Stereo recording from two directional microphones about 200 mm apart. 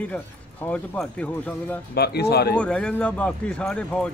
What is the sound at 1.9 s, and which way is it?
Speech, 55° left (ahead or behind).